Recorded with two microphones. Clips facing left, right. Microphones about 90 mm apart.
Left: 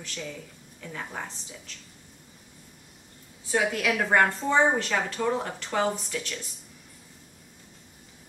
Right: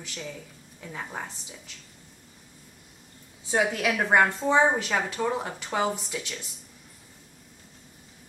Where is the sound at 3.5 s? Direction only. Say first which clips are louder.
Right 1 dB; 25° right (ahead or behind).